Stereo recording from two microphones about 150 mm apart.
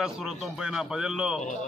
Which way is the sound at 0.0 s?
5° right (ahead or behind).